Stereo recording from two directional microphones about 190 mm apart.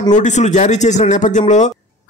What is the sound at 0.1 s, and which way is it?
A man's voice, 40° left (ahead or behind).